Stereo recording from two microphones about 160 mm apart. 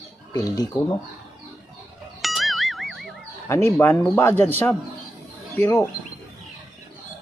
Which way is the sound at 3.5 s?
15° left (ahead or behind).